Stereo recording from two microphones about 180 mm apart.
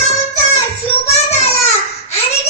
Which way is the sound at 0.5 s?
35° left (ahead or behind).